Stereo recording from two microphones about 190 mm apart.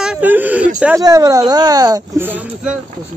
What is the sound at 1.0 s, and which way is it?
Speech, 20° right (ahead or behind).